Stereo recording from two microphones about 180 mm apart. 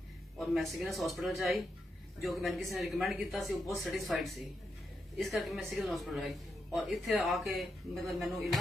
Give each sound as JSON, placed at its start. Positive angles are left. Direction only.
{"t": 0.4, "sound": "speech", "side_deg": 0}